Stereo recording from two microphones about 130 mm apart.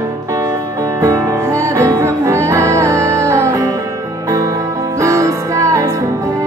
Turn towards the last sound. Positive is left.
turn(degrees=-25)  # may be behind; listen again after turning